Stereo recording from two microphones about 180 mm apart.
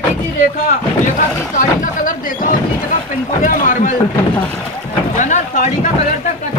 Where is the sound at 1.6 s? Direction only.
50° left (ahead or behind).